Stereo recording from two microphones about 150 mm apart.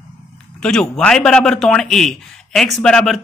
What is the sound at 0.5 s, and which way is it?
Speech, 5° left (ahead or behind).